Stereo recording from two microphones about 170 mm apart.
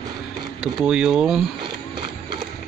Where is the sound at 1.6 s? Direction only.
30° right (ahead or behind).